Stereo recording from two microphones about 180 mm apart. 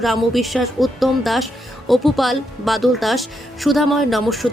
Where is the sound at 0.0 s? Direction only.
Centre (ahead or behind).